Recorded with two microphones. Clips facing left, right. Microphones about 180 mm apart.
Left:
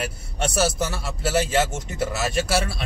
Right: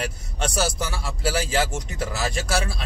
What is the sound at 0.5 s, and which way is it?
Speech, 25° left (ahead or behind).